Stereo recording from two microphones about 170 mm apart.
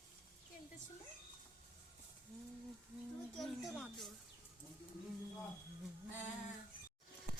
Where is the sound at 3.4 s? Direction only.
Centre (ahead or behind).